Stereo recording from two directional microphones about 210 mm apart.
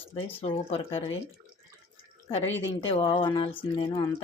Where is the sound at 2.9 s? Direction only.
25° left (ahead or behind).